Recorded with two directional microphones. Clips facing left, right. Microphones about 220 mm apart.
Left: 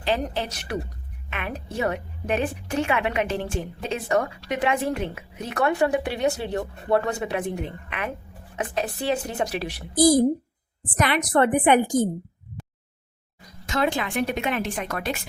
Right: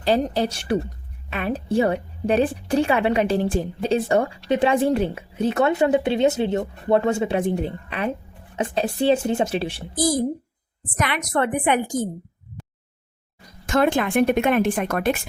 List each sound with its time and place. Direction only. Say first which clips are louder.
0.0 s speech: right 6 dB; 35° right (ahead or behind)
10.9 s a woman's voice: left 2 dB; 35° left (ahead or behind)
13.7 s speech: right 5 dB; 50° right (ahead or behind)